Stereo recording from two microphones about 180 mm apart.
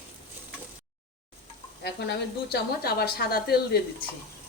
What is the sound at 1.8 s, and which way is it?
A woman's voice, 65° left (ahead or behind).